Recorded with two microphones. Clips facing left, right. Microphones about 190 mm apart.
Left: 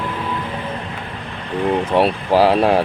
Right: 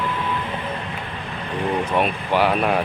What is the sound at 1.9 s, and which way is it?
Speech, 35° left (ahead or behind).